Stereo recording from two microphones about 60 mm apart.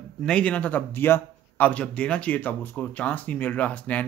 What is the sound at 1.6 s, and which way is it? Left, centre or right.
Speech, left.